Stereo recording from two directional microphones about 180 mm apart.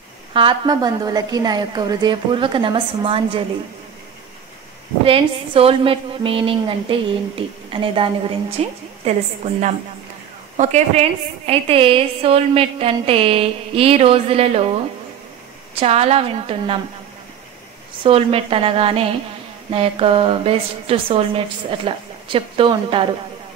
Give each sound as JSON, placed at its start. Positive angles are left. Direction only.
{"t": 0.3, "sound": "a woman's voice", "side_deg": -25}
{"t": 5.0, "sound": "a woman's voice", "side_deg": -30}
{"t": 18.0, "sound": "a woman's voice", "side_deg": -30}